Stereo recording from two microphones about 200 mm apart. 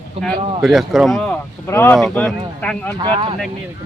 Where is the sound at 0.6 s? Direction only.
Centre (ahead or behind).